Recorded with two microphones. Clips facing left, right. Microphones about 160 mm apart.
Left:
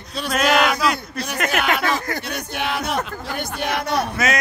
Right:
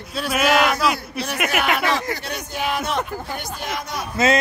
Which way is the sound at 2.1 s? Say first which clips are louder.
Left 1 dB; 70° left (ahead or behind).